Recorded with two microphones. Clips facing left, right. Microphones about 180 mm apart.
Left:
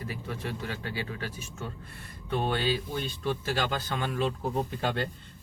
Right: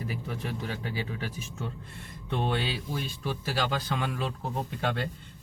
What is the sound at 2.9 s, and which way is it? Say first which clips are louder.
Speech: left 2 dB; 5° right (ahead or behind).